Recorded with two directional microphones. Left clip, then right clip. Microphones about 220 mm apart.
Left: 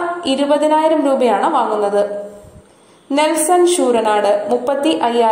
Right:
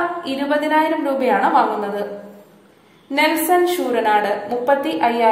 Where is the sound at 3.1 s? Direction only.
25° left (ahead or behind).